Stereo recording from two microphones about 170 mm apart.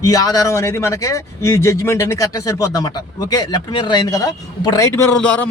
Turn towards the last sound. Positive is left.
turn(degrees=5)  # may be behind; listen again after turning